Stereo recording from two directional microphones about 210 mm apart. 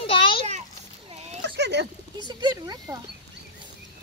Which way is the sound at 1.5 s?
55° right (ahead or behind).